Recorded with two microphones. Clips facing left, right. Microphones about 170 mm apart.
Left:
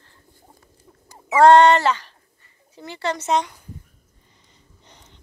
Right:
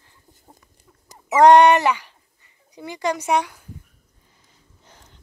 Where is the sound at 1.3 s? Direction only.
15° right (ahead or behind).